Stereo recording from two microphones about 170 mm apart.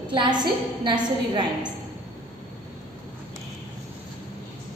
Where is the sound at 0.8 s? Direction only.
25° right (ahead or behind).